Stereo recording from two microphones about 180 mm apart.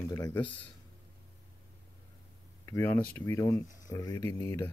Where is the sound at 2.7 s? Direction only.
10° left (ahead or behind).